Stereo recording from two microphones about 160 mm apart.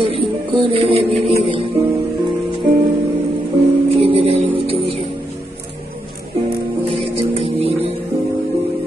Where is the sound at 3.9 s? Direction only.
35° right (ahead or behind).